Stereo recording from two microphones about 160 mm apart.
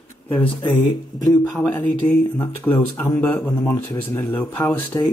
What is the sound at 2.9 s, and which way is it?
A man's voice, 15° left (ahead or behind).